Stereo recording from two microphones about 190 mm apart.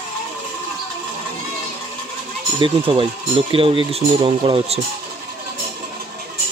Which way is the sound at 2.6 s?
25° right (ahead or behind).